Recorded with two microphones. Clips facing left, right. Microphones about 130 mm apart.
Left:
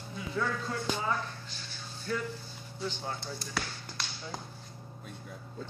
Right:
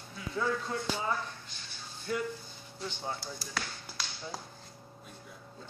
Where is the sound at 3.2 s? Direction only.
Centre (ahead or behind).